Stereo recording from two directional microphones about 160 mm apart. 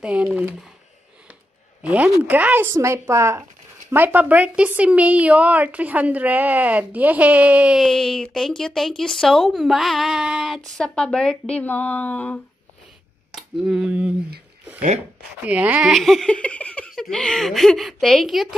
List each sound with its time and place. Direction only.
0.0 s a woman's voice: 10° right (ahead or behind)
1.8 s a woman's voice: 10° right (ahead or behind); by 12.4 s 10° left (ahead or behind)
13.3 s speech: 5° right (ahead or behind)
15.4 s a woman's voice: 10° right (ahead or behind)
15.9 s speech: centre (ahead or behind)